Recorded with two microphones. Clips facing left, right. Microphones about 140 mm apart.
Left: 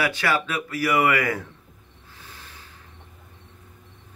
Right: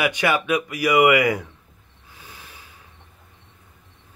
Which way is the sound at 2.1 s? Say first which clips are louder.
Right 2 dB; 15° right (ahead or behind).